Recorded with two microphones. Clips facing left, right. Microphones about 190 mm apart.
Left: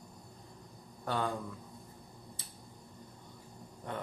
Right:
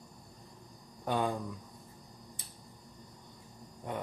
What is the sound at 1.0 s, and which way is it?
Speech, 15° right (ahead or behind).